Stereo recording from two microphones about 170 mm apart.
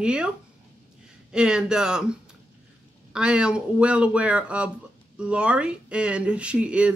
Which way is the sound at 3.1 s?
5° right (ahead or behind).